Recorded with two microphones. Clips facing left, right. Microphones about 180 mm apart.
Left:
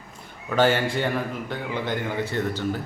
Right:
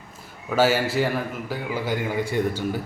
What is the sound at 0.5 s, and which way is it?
A man's voice, 5° right (ahead or behind).